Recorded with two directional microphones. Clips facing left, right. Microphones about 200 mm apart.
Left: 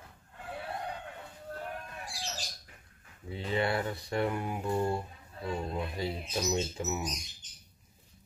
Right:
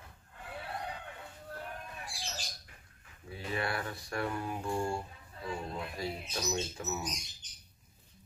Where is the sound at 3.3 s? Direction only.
25° left (ahead or behind).